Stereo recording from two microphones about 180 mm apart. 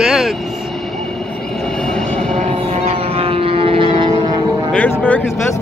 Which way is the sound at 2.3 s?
35° right (ahead or behind).